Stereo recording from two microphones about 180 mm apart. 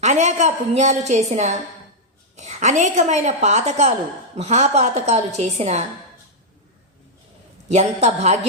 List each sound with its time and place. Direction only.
0.0 s a woman's voice: 40° right (ahead or behind)
7.7 s a woman's voice: 40° right (ahead or behind)